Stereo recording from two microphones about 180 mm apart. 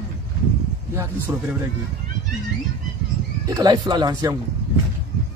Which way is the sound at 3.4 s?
20° right (ahead or behind).